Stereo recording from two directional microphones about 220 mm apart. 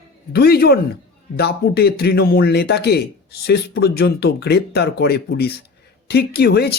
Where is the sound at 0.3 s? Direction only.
45° left (ahead or behind).